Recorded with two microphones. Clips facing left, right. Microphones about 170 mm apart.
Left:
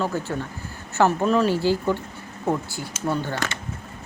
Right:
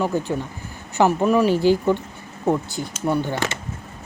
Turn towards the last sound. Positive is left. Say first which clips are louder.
# right 3 dB
turn(degrees=-15)  # may be behind; listen again after turning